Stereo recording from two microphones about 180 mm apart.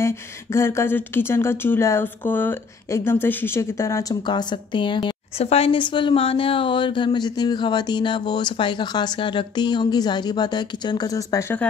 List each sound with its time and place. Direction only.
0.0 s speech: 15° left (ahead or behind)